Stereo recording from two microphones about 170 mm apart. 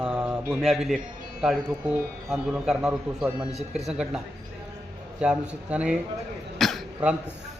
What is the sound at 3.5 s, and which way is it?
Speech, 40° right (ahead or behind).